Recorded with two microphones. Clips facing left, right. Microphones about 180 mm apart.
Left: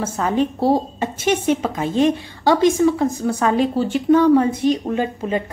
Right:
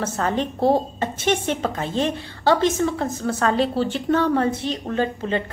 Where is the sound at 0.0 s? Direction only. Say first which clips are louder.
Left 4 dB; 10° left (ahead or behind).